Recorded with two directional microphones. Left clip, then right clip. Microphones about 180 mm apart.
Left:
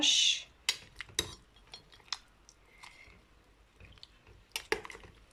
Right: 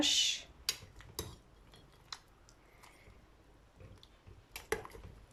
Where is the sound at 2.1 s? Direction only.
Centre (ahead or behind).